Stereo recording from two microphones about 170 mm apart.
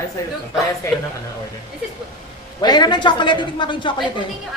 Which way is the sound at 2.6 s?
25° left (ahead or behind).